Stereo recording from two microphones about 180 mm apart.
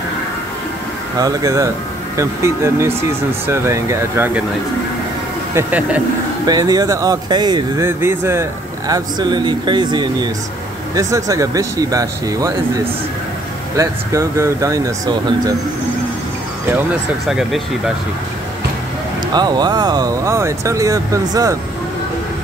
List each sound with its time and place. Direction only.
1.1 s speech: 20° right (ahead or behind)
5.5 s speech: 10° right (ahead or behind)
6.4 s speech: 20° right (ahead or behind)
17.3 s speech: 5° right (ahead or behind)
19.3 s speech: 25° right (ahead or behind)